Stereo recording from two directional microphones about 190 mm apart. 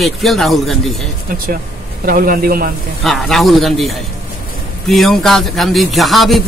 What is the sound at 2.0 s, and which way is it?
Speech, 50° right (ahead or behind).